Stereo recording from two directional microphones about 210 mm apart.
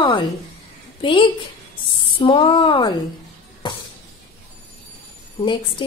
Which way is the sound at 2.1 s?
25° left (ahead or behind).